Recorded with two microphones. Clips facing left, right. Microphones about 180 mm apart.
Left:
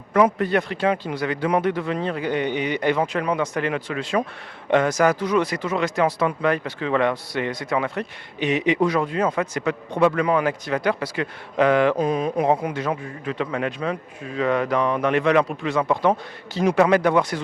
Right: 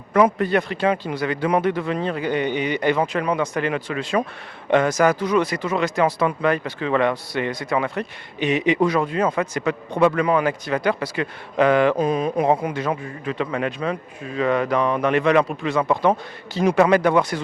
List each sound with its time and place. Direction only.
0.1 s a man's voice: 15° right (ahead or behind)